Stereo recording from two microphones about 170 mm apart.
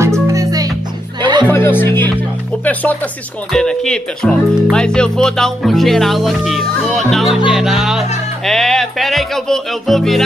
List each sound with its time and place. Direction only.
0.0 s music: 20° right (ahead or behind)
1.5 s speech: 15° left (ahead or behind)